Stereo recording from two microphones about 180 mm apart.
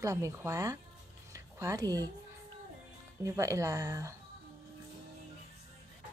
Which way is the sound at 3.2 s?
15° right (ahead or behind).